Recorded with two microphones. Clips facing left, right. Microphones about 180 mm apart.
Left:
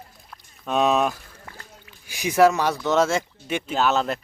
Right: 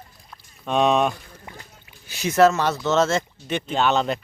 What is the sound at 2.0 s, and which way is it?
Speech, 10° left (ahead or behind).